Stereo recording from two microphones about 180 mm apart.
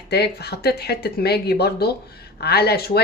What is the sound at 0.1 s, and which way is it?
Speech, 65° left (ahead or behind).